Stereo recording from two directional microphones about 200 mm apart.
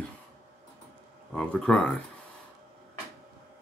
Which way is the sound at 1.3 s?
5° left (ahead or behind).